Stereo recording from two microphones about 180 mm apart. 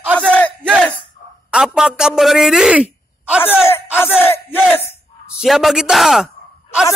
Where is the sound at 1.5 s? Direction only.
5° right (ahead or behind).